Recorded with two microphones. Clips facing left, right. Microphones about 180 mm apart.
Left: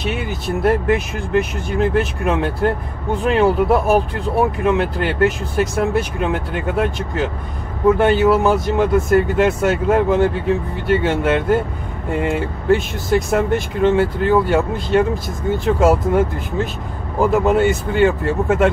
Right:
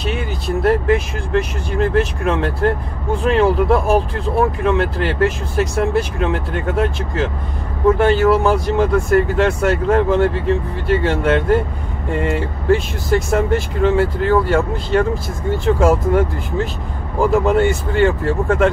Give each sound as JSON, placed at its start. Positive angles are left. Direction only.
{"t": 0.0, "sound": "speech", "side_deg": 0}